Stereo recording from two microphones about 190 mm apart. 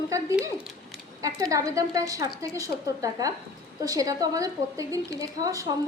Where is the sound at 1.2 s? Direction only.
15° right (ahead or behind).